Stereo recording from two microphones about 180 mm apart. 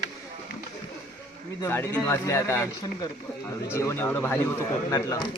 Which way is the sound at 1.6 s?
10° left (ahead or behind).